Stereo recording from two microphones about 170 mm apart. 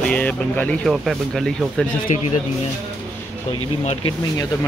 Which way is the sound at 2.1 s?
45° left (ahead or behind).